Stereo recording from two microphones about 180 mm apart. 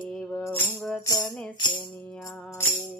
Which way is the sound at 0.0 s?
5° left (ahead or behind).